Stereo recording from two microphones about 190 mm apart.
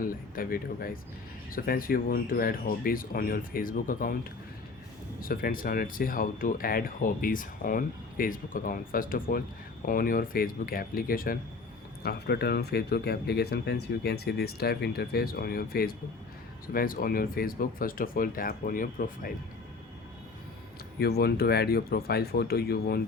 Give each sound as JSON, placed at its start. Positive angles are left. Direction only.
{"t": 0.0, "sound": "speech", "side_deg": 50}
{"t": 5.2, "sound": "speech", "side_deg": 50}
{"t": 21.0, "sound": "speech", "side_deg": 55}